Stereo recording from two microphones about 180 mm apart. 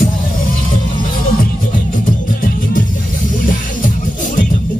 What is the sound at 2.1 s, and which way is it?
Music, 50° left (ahead or behind).